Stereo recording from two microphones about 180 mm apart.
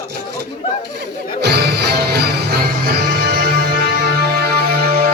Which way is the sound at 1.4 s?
65° right (ahead or behind).